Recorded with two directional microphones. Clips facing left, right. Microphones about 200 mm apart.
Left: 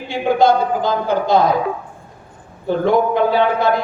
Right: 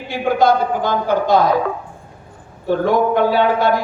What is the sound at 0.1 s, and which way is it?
Speech, 25° left (ahead or behind).